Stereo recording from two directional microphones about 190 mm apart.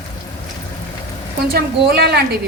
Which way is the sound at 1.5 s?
55° right (ahead or behind).